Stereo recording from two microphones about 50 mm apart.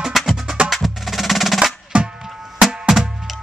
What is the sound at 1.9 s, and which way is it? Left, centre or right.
Music, right.